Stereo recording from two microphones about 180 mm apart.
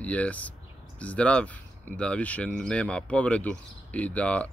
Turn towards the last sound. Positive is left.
turn(degrees=10)  # may be behind; listen again after turning